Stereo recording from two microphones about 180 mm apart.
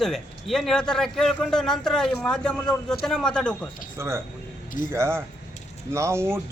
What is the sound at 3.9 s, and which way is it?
A man's voice, 15° right (ahead or behind).